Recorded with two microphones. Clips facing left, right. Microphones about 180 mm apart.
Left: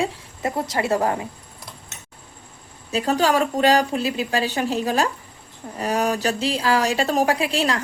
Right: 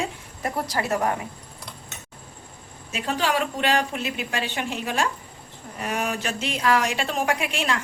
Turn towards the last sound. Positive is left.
turn(degrees=35)  # may be behind; listen again after turning